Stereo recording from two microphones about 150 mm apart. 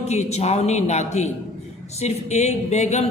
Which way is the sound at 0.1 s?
45° left (ahead or behind).